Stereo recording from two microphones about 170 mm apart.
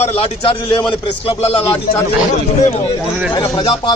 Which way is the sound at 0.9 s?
35° left (ahead or behind).